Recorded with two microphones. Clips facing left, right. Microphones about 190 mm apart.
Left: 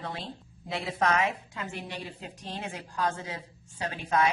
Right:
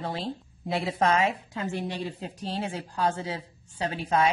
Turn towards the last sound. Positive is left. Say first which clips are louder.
# right 2 dB
turn(degrees=-30)  # may be behind; listen again after turning